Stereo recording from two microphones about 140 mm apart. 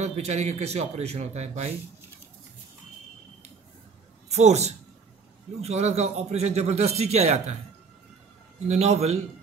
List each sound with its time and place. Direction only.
0.0 s a man's voice: 50° right (ahead or behind)
4.3 s a man's voice: 50° right (ahead or behind)
8.6 s a man's voice: 50° right (ahead or behind)